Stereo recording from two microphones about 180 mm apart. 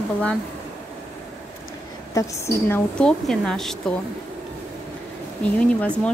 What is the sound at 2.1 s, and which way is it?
Speech, 15° left (ahead or behind).